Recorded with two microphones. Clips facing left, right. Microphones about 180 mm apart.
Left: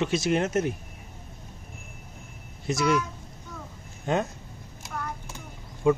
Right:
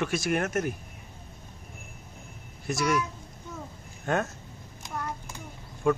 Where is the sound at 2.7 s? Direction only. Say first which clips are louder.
Left 2 dB; 20° left (ahead or behind).